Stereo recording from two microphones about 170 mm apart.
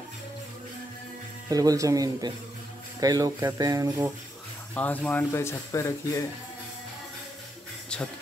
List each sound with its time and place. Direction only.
1.5 s speech: 20° right (ahead or behind)
4.7 s speech: 10° left (ahead or behind)